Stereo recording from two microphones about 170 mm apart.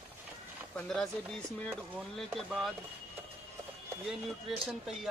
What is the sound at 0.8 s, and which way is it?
Speech, 5° left (ahead or behind).